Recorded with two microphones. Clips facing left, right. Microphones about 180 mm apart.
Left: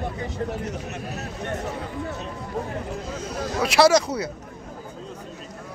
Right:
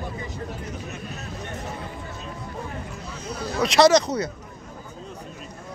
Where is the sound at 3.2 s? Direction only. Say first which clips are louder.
Right 1 dB; 90° left.